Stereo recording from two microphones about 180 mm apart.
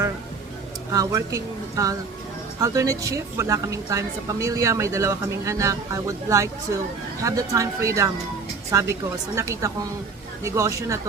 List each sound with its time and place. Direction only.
0.9 s a woman's voice: 20° right (ahead or behind)